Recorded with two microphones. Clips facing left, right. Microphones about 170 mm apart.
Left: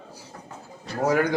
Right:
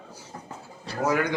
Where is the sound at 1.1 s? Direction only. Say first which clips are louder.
Left 3 dB; 40° left (ahead or behind).